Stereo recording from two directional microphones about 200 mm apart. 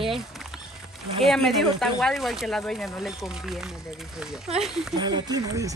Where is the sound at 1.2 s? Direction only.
Centre (ahead or behind).